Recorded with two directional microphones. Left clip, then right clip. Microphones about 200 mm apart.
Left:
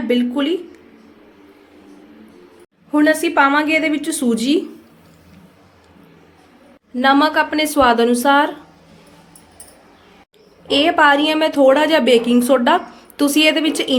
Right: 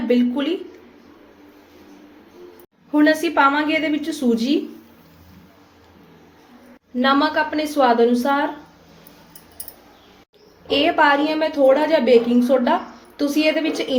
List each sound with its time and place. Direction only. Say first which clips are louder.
0.1 s a woman's voice: left 1 dB; 20° left (ahead or behind)
2.9 s a woman's voice: left 2 dB; 15° left (ahead or behind)
6.9 s a woman's voice: left 4 dB; 20° left (ahead or behind)
10.7 s a woman's voice: left 3 dB; 20° left (ahead or behind)